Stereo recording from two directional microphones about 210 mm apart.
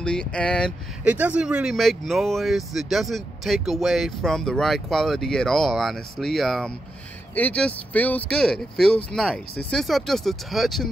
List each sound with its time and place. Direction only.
0.0 s speech: 5° left (ahead or behind)
1.0 s speech: 5° right (ahead or behind)